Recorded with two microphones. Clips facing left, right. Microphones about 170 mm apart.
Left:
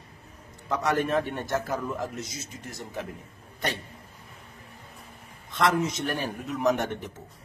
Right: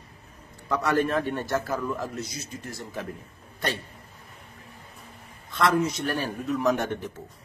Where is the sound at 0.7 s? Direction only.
20° left (ahead or behind).